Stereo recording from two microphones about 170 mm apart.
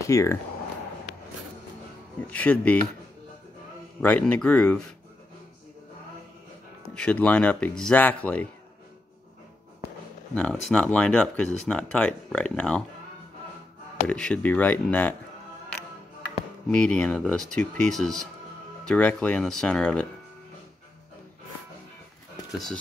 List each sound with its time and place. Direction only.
0.1 s speech: 20° left (ahead or behind)
2.3 s speech: 10° left (ahead or behind)
4.0 s speech: 10° left (ahead or behind)
7.0 s speech: 10° left (ahead or behind)
10.3 s speech: 10° left (ahead or behind)
14.0 s speech: 5° left (ahead or behind)
16.6 s speech: 5° left (ahead or behind)